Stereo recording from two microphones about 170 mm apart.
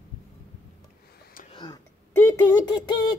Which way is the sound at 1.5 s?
25° left (ahead or behind).